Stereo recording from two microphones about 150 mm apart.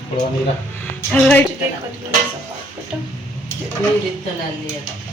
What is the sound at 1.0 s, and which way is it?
Speech, 15° left (ahead or behind).